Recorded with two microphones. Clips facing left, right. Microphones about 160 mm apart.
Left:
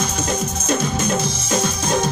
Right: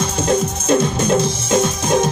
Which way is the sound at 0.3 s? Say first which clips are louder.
Right 8 dB; 30° right (ahead or behind).